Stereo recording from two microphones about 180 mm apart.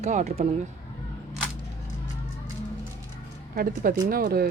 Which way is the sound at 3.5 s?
50° right (ahead or behind).